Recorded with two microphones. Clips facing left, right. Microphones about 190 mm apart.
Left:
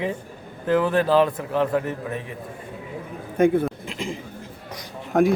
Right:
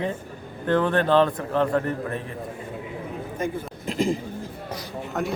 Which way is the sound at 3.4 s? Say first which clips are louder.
Left 11 dB; 60° left (ahead or behind).